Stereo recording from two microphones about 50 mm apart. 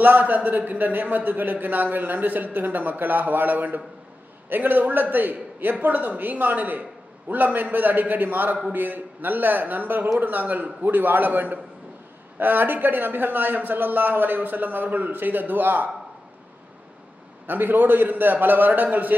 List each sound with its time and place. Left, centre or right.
0.0 s a man's voice: right
17.5 s a man's voice: right